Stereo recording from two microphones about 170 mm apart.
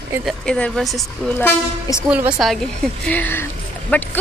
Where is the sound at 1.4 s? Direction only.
15° left (ahead or behind).